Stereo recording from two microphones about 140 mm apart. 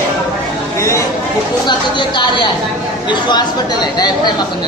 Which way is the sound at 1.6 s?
35° left (ahead or behind).